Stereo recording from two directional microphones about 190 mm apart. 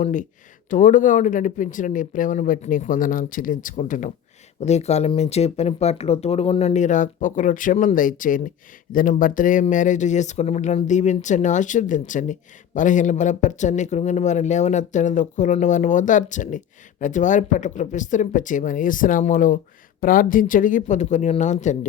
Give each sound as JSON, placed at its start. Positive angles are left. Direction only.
{"t": 0.0, "sound": "speech", "side_deg": 45}